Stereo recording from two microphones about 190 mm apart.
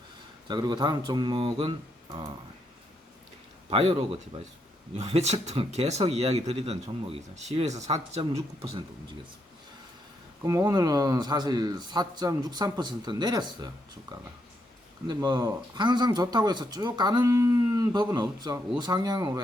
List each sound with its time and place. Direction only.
0.4 s speech: 25° right (ahead or behind)
3.7 s speech: 30° right (ahead or behind)
10.4 s speech: 15° right (ahead or behind)
15.0 s speech: 20° right (ahead or behind)